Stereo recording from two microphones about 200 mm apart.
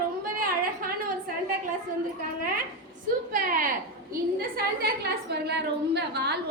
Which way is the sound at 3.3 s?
45° right (ahead or behind).